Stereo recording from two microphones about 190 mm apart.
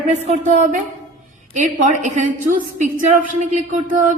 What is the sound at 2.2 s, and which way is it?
A woman's voice, 45° right (ahead or behind).